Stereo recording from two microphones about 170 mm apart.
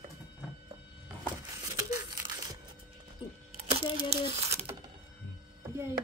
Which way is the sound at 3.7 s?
35° right (ahead or behind).